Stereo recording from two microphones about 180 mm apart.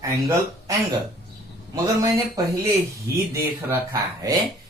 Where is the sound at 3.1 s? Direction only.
15° right (ahead or behind).